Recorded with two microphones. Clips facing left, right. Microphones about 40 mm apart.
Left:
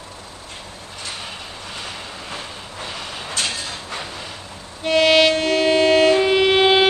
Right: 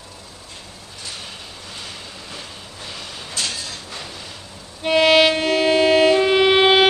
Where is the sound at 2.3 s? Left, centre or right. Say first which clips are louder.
Left 4 dB; left.